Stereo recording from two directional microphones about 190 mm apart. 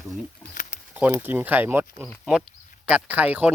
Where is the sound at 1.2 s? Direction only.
10° right (ahead or behind).